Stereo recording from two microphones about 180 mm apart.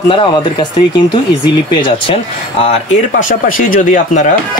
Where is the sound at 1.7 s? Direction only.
30° left (ahead or behind).